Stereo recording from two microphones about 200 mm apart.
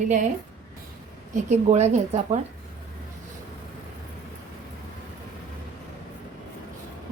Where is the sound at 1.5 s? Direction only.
35° right (ahead or behind).